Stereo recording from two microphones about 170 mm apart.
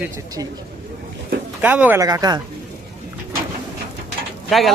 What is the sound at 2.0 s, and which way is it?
Speech, 20° right (ahead or behind).